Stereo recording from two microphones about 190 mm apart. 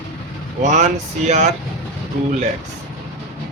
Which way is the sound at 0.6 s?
35° right (ahead or behind).